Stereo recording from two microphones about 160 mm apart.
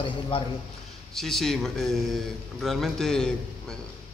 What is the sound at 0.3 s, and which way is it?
Speech, 35° left (ahead or behind).